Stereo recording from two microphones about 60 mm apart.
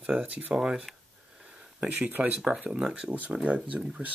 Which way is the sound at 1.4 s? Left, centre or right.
Right.